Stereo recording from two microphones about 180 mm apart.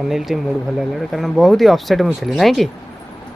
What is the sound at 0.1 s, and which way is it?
Speech, centre (ahead or behind).